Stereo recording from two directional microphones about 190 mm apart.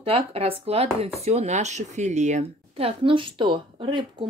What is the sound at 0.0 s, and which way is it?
Speech, 30° right (ahead or behind).